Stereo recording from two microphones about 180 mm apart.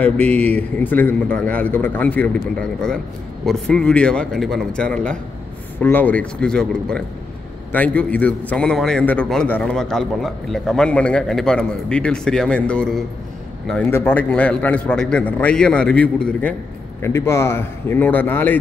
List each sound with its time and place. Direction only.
0.0 s a man's voice: 10° left (ahead or behind)